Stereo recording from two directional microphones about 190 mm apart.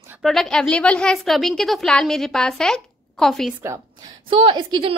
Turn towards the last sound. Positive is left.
turn(degrees=-25)  # may be behind; listen again after turning